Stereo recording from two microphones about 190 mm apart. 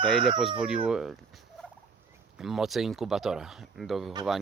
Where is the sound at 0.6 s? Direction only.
5° right (ahead or behind).